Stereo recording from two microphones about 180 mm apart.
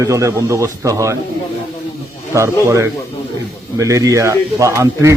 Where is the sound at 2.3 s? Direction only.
15° right (ahead or behind).